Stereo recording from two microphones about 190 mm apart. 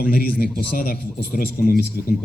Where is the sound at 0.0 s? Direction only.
50° left (ahead or behind).